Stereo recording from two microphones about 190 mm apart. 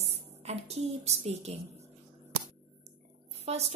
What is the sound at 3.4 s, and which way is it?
Speech, 35° right (ahead or behind).